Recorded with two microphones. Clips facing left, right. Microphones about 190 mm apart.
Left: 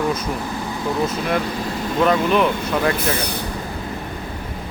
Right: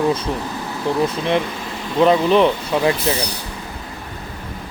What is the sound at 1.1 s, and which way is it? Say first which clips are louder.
Speech: right 2 dB; 25° right (ahead or behind).